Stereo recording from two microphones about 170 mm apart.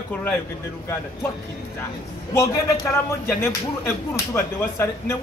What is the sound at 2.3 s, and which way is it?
Speech, 15° left (ahead or behind).